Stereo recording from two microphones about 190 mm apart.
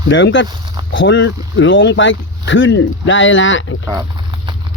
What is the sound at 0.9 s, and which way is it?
Speech, 75° left (ahead or behind).